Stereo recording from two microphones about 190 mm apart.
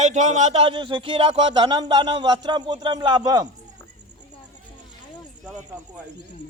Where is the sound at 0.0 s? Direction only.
40° right (ahead or behind); by 3.5 s 20° right (ahead or behind).